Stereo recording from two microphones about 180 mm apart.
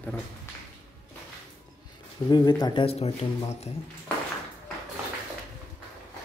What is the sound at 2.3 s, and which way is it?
Speech, 25° left (ahead or behind).